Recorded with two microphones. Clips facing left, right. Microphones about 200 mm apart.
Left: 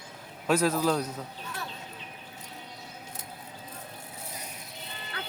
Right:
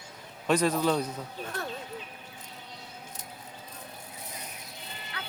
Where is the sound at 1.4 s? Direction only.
50° right (ahead or behind).